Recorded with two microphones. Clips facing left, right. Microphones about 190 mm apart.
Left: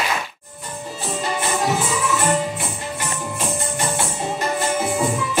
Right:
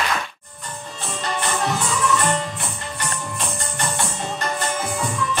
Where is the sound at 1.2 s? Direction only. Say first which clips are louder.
Left 1 dB; 5° left (ahead or behind).